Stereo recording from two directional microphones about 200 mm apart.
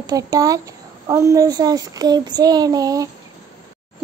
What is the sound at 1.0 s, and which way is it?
Child singing, 15° right (ahead or behind).